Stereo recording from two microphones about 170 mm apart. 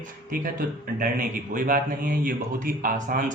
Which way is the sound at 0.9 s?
55° right (ahead or behind).